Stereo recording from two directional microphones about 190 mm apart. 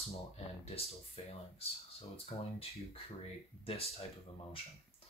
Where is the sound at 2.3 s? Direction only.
25° left (ahead or behind).